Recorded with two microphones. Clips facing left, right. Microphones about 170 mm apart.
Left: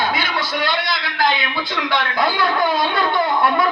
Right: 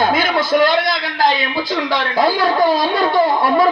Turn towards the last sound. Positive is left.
turn(degrees=-35)  # may be behind; listen again after turning